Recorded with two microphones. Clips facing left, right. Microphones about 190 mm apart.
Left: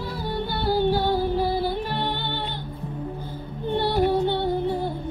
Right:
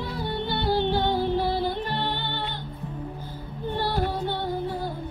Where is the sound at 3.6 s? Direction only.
20° left (ahead or behind).